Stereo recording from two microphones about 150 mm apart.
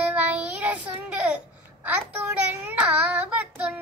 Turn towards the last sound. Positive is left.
turn(degrees=-10)  # may be behind; listen again after turning